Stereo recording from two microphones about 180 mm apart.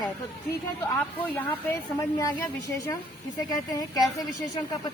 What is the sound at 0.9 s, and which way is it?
A woman's voice, 10° left (ahead or behind).